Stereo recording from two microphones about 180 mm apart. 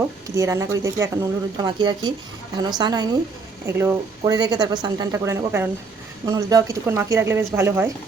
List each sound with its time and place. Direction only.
0.3 s speech: 15° right (ahead or behind)